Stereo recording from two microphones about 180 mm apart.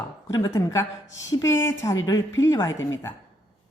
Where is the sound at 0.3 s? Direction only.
20° left (ahead or behind).